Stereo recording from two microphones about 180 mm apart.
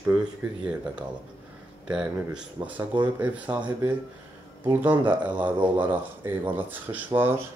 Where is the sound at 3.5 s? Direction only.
25° right (ahead or behind).